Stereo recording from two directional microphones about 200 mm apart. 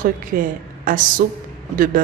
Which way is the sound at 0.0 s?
45° right (ahead or behind).